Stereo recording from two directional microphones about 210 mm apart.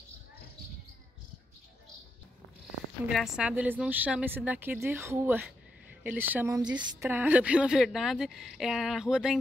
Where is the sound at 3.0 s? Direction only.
Centre (ahead or behind); by 7.1 s 20° right (ahead or behind).